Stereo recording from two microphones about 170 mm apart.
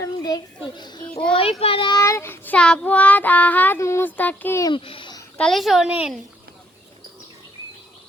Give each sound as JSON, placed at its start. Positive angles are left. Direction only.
{"t": 0.0, "sound": "a child's voice", "side_deg": 25}
{"t": 1.4, "sound": "a child's voice", "side_deg": 35}
{"t": 2.0, "sound": "child singing", "side_deg": 15}
{"t": 4.7, "sound": "a sound", "side_deg": 30}
{"t": 5.4, "sound": "a woman's voice", "side_deg": 0}